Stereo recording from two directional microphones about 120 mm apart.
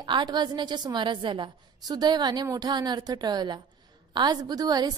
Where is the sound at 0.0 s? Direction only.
35° right (ahead or behind).